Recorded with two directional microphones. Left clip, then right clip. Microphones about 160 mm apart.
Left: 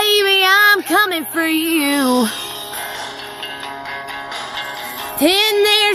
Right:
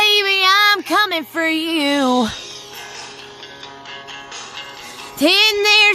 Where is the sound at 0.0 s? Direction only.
20° right (ahead or behind).